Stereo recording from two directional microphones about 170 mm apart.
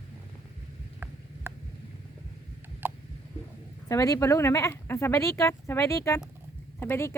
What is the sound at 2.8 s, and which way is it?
Tick, 10° right (ahead or behind).